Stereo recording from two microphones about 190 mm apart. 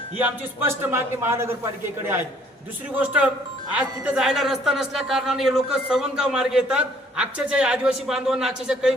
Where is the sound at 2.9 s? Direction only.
5° right (ahead or behind).